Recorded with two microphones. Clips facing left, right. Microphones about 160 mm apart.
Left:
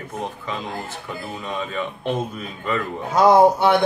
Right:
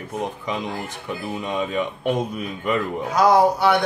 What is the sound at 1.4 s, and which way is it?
Speech, 15° right (ahead or behind).